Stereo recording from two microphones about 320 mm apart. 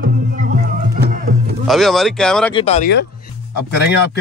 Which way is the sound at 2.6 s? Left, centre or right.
Centre.